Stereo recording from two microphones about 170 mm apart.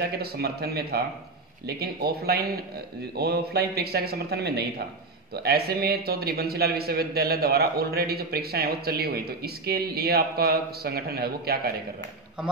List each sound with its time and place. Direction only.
0.0 s a man's voice: 65° right (ahead or behind)